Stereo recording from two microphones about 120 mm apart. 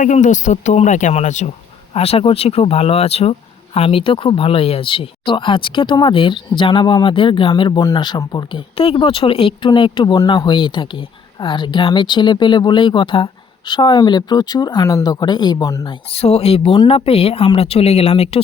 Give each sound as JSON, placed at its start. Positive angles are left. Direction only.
{"t": 0.0, "sound": "speech", "side_deg": 90}
{"t": 1.9, "sound": "speech", "side_deg": 55}
{"t": 8.8, "sound": "speech", "side_deg": 50}
{"t": 15.9, "sound": "speech", "side_deg": 60}